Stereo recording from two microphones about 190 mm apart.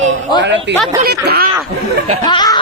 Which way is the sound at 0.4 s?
65° right (ahead or behind).